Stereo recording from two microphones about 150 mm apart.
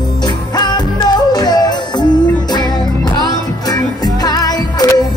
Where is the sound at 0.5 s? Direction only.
30° left (ahead or behind).